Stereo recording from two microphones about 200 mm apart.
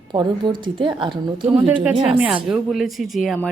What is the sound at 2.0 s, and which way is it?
Speech, 5° right (ahead or behind).